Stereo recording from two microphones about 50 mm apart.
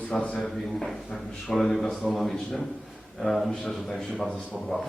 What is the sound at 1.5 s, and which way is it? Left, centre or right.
Mantra, centre.